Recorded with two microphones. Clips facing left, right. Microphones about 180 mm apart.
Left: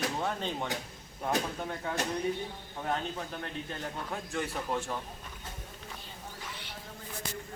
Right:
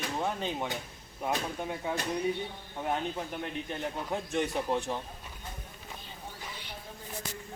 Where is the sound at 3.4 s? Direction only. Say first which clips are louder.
Right 3 dB; 20° right (ahead or behind).